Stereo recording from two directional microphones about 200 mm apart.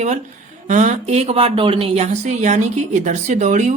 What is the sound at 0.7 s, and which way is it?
Speech, 35° right (ahead or behind).